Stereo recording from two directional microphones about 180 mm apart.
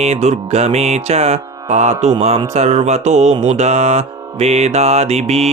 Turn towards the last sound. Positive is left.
turn(degrees=-35)  # may be behind; listen again after turning